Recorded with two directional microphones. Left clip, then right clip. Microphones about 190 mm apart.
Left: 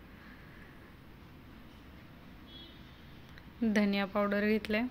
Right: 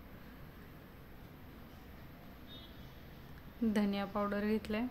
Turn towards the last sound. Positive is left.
turn(degrees=10)  # may be behind; listen again after turning